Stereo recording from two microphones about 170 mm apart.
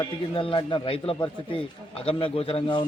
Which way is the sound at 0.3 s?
30° left (ahead or behind).